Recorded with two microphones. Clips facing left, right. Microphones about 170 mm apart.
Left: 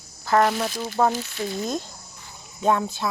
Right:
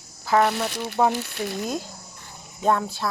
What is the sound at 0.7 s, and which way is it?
Speech, 70° right (ahead or behind).